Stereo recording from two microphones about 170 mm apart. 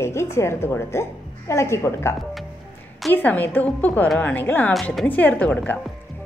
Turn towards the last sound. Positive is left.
turn(degrees=10)  # may be behind; listen again after turning